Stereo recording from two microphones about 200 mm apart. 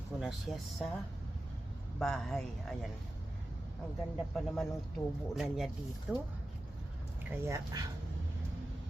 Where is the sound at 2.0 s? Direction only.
Centre (ahead or behind).